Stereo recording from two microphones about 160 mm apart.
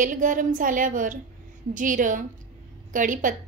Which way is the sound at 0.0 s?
55° right (ahead or behind).